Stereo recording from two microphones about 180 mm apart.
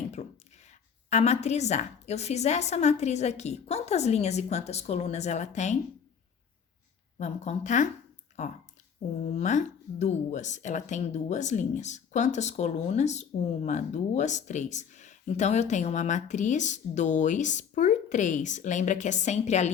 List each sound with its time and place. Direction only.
0.2 s a sound: 35° left (ahead or behind)
0.7 s speech: 40° left (ahead or behind)
7.2 s speech: 40° left (ahead or behind)